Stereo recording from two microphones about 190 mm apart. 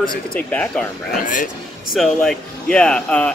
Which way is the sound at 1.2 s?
45° left (ahead or behind).